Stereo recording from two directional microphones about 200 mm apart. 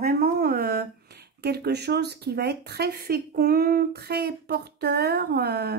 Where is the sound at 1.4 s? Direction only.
55° right (ahead or behind).